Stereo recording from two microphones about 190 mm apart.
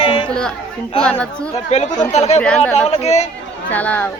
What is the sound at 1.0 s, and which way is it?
Speech, 5° left (ahead or behind).